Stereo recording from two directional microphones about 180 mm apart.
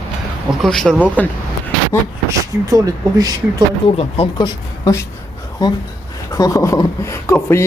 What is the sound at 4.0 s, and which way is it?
Speech, 35° left (ahead or behind).